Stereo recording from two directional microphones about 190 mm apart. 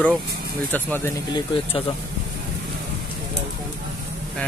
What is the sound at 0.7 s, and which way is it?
Speech, 10° left (ahead or behind).